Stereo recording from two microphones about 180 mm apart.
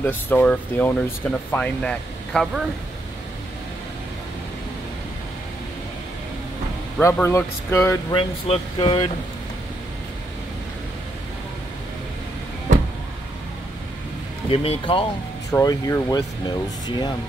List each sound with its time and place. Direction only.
0.0 s speech: 10° left (ahead or behind)
7.0 s speech: 15° left (ahead or behind)
8.5 s speech: 30° left (ahead or behind)
14.5 s speech: 30° left (ahead or behind)
15.5 s speech: 20° left (ahead or behind)